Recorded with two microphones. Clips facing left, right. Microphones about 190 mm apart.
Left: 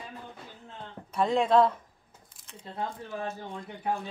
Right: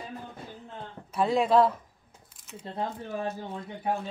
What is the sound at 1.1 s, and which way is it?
Speech, 5° right (ahead or behind).